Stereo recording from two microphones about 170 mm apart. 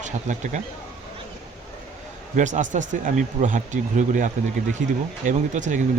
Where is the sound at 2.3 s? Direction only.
45° right (ahead or behind).